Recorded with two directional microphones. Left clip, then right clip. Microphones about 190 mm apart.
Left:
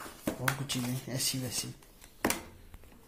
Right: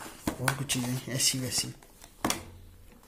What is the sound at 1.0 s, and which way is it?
Speech, 20° right (ahead or behind).